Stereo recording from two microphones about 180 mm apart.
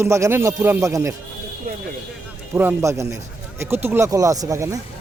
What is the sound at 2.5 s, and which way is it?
Speech, 15° right (ahead or behind).